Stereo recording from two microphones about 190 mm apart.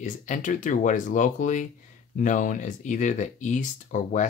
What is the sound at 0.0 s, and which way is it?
Speech, 40° left (ahead or behind).